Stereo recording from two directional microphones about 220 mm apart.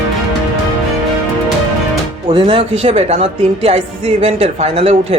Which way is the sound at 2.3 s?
25° right (ahead or behind).